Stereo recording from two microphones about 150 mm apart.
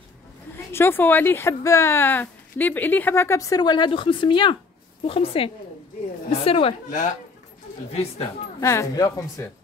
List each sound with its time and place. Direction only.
0.7 s a woman's voice: 15° left (ahead or behind); by 6.7 s 40° left (ahead or behind)
6.9 s speech: 60° left (ahead or behind)
7.9 s speech: 40° left (ahead or behind)
8.5 s speech: 20° left (ahead or behind)